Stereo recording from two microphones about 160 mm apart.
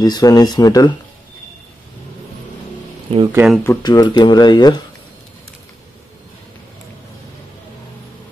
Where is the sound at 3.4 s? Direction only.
10° right (ahead or behind).